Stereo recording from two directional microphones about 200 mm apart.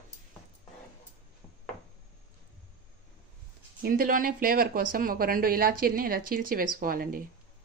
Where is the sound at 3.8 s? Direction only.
45° right (ahead or behind).